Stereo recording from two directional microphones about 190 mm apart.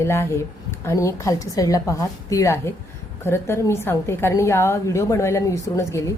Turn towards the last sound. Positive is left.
turn(degrees=15)  # may be behind; listen again after turning